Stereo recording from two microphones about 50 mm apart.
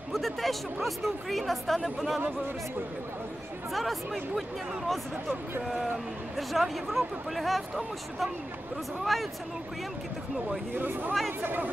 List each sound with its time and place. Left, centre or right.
0.1 s speech: centre
3.7 s speech: centre
6.3 s speech: centre
10.7 s speech: right